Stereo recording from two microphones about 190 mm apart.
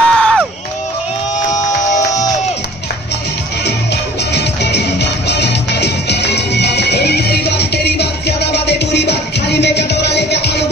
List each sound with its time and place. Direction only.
0.0 s crowd: 5° left (ahead or behind)
3.6 s music: 60° left (ahead or behind)